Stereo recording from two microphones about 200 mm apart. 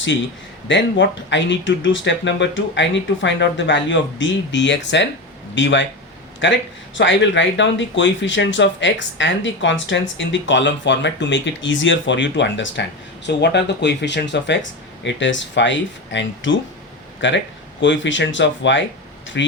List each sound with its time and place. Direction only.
0.7 s speech: 65° left (ahead or behind)